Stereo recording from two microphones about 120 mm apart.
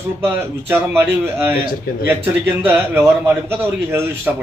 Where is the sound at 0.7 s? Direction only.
20° right (ahead or behind).